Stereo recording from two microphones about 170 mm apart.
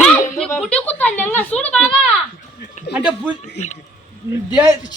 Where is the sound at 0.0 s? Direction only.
5° left (ahead or behind).